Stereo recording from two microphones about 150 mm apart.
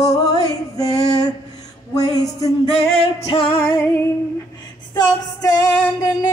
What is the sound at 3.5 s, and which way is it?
Female singing, 15° left (ahead or behind).